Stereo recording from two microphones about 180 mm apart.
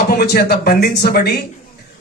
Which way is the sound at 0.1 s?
65° left (ahead or behind).